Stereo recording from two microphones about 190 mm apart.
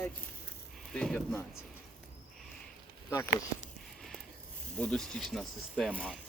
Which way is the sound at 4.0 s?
Centre (ahead or behind).